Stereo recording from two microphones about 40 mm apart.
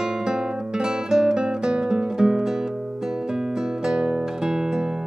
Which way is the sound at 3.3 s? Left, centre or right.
Centre.